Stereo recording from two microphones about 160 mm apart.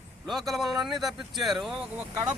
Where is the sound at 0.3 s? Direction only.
Centre (ahead or behind).